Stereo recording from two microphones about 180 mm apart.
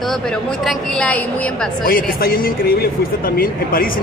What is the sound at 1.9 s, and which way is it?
A man's voice, 50° left (ahead or behind).